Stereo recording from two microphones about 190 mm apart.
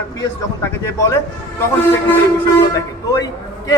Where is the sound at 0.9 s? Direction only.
15° left (ahead or behind).